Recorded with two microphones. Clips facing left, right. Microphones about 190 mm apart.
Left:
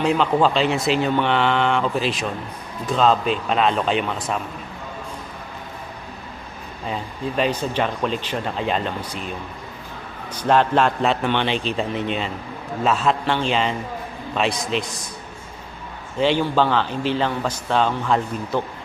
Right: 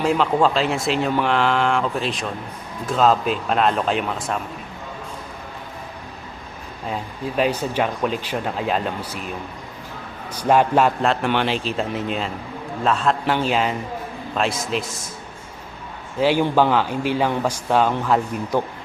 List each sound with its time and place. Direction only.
0.0 s speech: centre (ahead or behind)
6.8 s speech: 5° right (ahead or behind)
10.4 s speech: 10° right (ahead or behind)
16.2 s speech: 10° right (ahead or behind)